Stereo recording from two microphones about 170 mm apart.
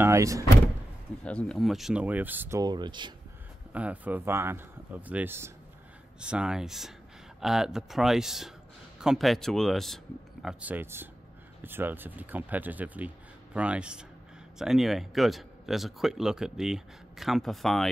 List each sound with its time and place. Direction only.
0.0 s speech: 20° right (ahead or behind)
1.2 s speech: 5° left (ahead or behind); by 2.6 s 10° right (ahead or behind)
2.6 s speech: 25° right (ahead or behind)
3.7 s speech: 10° right (ahead or behind)
10.4 s speech: 10° right (ahead or behind)